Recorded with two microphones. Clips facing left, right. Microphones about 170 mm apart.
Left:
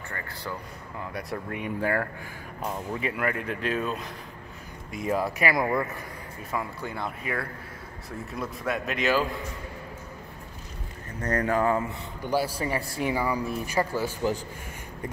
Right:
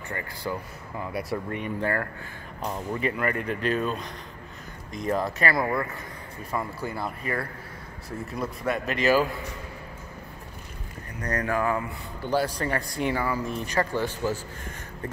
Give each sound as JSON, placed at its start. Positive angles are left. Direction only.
{"t": 0.1, "sound": "speech", "side_deg": -10}
{"t": 1.6, "sound": "speech", "side_deg": 10}
{"t": 6.5, "sound": "speech", "side_deg": 0}
{"t": 11.1, "sound": "speech", "side_deg": 30}
{"t": 12.3, "sound": "speech", "side_deg": 10}